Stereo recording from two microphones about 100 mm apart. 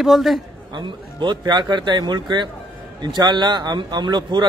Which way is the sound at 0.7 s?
50° right (ahead or behind).